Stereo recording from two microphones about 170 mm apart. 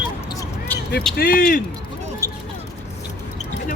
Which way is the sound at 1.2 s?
60° left (ahead or behind).